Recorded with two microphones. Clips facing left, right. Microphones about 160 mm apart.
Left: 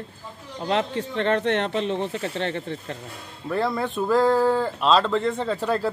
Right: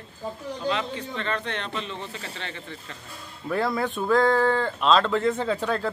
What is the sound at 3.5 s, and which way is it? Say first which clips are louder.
Speech: left 1 dB; centre (ahead or behind).